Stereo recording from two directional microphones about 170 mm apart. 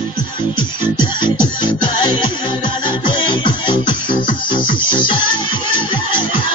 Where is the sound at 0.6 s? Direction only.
25° left (ahead or behind).